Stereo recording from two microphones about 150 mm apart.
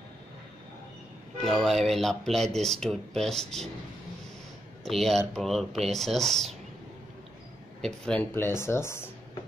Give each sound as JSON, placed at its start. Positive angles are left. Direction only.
{"t": 1.4, "sound": "speech", "side_deg": 0}
{"t": 4.8, "sound": "speech", "side_deg": 0}
{"t": 7.8, "sound": "speech", "side_deg": 5}